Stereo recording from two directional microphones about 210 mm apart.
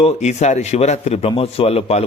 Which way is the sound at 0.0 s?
30° left (ahead or behind).